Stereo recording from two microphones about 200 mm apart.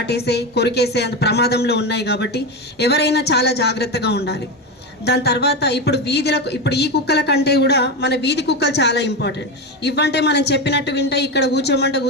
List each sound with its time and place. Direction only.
0.0 s speech: 55° left (ahead or behind)